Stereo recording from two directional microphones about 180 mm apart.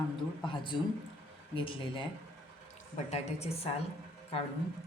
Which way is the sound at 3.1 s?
35° left (ahead or behind).